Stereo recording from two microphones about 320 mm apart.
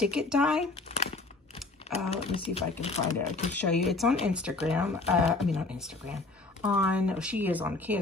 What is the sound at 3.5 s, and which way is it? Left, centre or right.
Speech, centre.